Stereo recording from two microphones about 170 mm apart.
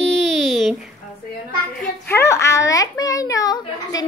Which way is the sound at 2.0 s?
15° left (ahead or behind).